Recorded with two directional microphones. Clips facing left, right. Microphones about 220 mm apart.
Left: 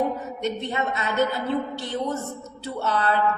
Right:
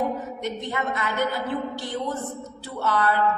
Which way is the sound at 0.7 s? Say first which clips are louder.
Left 1 dB; 25° left (ahead or behind).